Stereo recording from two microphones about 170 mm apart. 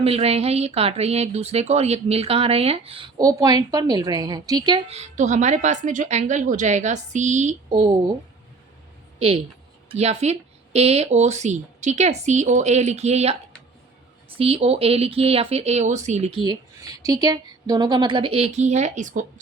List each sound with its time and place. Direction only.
0.0 s speech: 35° right (ahead or behind)
3.2 s a woman's voice: 20° right (ahead or behind)
4.9 s speech: 45° right (ahead or behind)
7.7 s a woman's voice: 30° right (ahead or behind)
9.1 s a woman's voice: 35° right (ahead or behind)
14.3 s speech: 35° right (ahead or behind)